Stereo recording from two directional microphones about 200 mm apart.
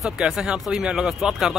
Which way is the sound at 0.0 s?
Centre (ahead or behind).